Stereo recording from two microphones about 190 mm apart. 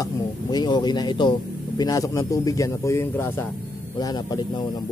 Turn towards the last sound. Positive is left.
turn(degrees=20)  # may be behind; listen again after turning